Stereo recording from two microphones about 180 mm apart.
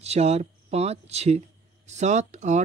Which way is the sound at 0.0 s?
35° right (ahead or behind).